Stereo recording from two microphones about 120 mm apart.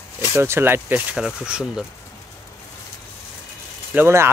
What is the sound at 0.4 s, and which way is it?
Speech, 20° right (ahead or behind).